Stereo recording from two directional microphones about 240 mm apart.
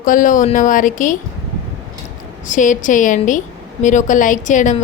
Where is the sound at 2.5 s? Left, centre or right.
Left.